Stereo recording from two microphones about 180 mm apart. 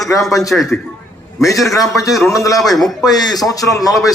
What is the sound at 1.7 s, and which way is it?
A man's voice, 20° left (ahead or behind).